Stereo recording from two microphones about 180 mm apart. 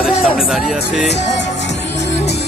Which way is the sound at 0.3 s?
Centre (ahead or behind).